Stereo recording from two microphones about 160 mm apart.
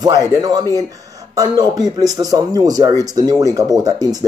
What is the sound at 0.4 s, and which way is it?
Speech, 25° right (ahead or behind).